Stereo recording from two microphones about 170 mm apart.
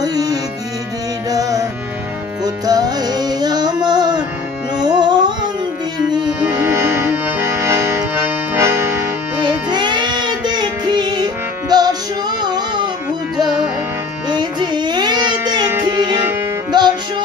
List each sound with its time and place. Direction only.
0.0 s music: 20° right (ahead or behind)
6.4 s accordion: 15° right (ahead or behind)
9.4 s music: 25° right (ahead or behind)
14.3 s child singing: 25° right (ahead or behind)
16.7 s music: 25° right (ahead or behind)